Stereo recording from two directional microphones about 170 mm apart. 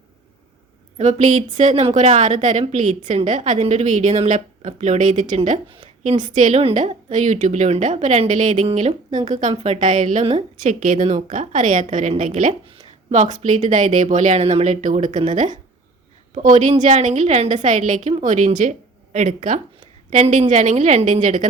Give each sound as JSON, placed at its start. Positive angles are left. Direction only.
{"t": 0.9, "sound": "a woman's voice", "side_deg": -45}
{"t": 5.6, "sound": "a woman's voice", "side_deg": -30}
{"t": 6.2, "sound": "a woman's voice", "side_deg": -50}
{"t": 6.6, "sound": "a woman's voice", "side_deg": -35}
{"t": 12.6, "sound": "a sound", "side_deg": -30}
{"t": 13.3, "sound": "a woman's voice", "side_deg": -45}